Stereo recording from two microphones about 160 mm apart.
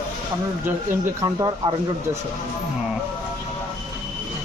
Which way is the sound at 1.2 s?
25° right (ahead or behind).